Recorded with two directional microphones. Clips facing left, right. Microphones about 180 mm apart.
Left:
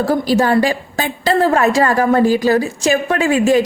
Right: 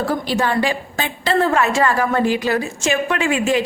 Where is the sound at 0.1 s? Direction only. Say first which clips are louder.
Left 6 dB; 40° left (ahead or behind).